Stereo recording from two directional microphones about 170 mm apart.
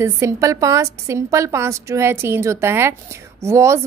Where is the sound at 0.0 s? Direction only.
20° right (ahead or behind).